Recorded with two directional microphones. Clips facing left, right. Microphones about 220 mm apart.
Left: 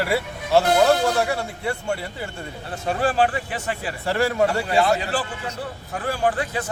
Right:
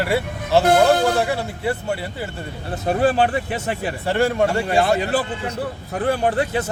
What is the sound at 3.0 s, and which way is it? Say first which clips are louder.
Speech: right 4 dB; 20° right (ahead or behind).